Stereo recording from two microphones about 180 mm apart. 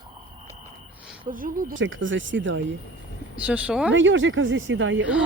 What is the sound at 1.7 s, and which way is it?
Speech, 90° right.